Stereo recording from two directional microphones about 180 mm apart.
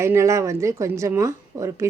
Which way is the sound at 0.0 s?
15° right (ahead or behind).